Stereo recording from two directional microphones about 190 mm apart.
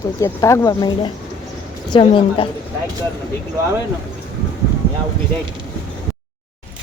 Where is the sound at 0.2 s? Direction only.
15° left (ahead or behind).